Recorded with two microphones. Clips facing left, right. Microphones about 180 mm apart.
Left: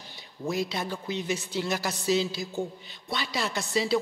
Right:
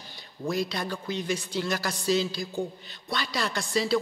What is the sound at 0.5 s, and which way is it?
Speech, 5° left (ahead or behind).